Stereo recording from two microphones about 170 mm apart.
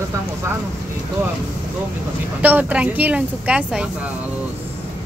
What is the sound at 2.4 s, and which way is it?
Speech, 10° right (ahead or behind).